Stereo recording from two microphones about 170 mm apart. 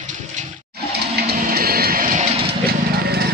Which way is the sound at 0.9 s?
70° right (ahead or behind).